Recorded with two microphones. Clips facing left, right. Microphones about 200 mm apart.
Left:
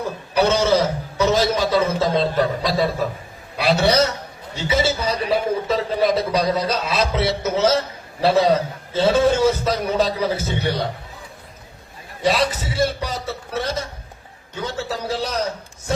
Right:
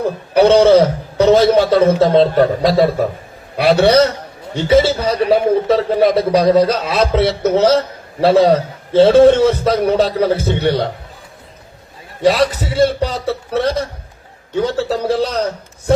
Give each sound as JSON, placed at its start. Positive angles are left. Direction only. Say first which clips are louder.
{"t": 0.0, "sound": "a man's voice", "louder": "right 7 dB", "side_deg": -60}
{"t": 12.2, "sound": "a man's voice", "louder": "right 6 dB", "side_deg": -60}